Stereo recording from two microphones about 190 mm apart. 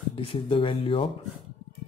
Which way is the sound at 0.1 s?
30° left (ahead or behind).